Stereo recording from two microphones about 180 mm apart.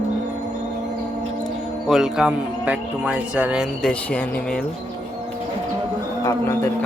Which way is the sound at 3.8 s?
10° left (ahead or behind).